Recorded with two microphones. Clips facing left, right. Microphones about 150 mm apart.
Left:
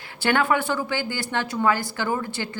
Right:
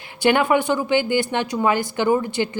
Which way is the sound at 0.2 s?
15° right (ahead or behind).